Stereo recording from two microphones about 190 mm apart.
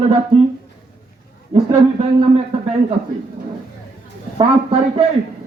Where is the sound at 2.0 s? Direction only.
30° right (ahead or behind).